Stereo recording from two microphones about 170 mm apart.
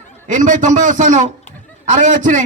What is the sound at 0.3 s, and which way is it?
A man's voice, 45° right (ahead or behind).